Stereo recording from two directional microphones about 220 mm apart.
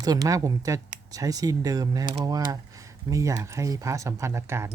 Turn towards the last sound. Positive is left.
turn(degrees=-10)  # may be behind; listen again after turning